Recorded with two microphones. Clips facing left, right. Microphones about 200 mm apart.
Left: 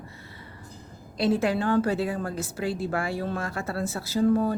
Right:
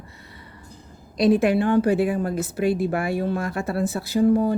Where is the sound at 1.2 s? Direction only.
15° right (ahead or behind).